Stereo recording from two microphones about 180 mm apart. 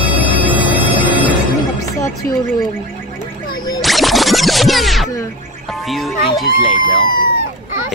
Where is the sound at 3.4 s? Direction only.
25° left (ahead or behind).